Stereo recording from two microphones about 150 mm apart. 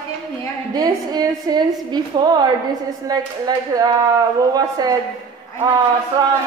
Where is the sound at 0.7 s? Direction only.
25° right (ahead or behind).